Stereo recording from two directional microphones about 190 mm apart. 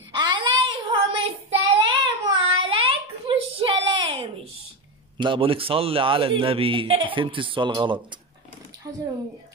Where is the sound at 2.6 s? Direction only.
25° right (ahead or behind).